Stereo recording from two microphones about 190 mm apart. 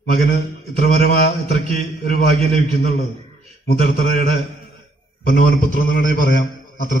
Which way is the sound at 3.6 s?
50° left (ahead or behind).